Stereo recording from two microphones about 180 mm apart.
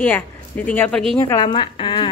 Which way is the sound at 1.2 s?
20° left (ahead or behind).